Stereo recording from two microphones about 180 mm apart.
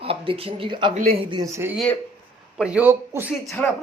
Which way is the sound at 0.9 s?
50° right (ahead or behind).